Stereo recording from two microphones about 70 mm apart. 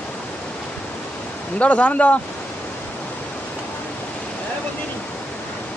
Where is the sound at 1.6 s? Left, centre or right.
Centre.